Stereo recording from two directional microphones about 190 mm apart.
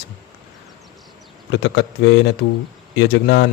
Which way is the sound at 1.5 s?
65° left (ahead or behind).